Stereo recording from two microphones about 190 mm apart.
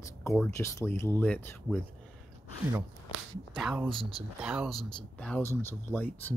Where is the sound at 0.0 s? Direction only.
15° left (ahead or behind).